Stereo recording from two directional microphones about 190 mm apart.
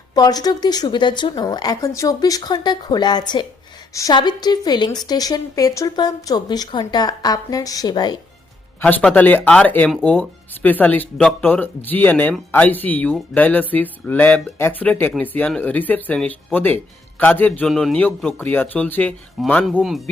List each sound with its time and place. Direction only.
0.1 s a woman's voice: 20° left (ahead or behind)
8.8 s speech: 5° left (ahead or behind)